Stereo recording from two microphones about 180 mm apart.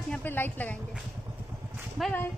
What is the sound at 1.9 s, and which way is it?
Speech, centre (ahead or behind).